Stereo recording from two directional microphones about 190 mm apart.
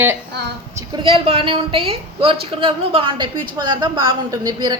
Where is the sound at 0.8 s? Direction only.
25° right (ahead or behind).